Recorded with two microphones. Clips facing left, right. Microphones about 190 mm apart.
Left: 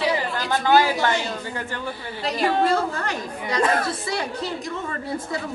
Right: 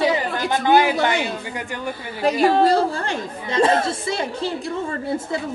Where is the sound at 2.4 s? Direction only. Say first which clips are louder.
Right 4 dB; 35° right (ahead or behind).